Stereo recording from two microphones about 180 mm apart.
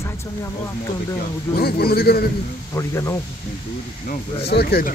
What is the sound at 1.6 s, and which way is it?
Speech, 60° left (ahead or behind).